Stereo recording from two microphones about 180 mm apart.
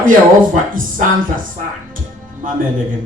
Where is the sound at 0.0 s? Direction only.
50° right (ahead or behind).